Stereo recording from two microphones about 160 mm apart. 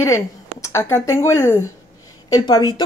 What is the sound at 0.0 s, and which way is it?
Speech, 15° left (ahead or behind).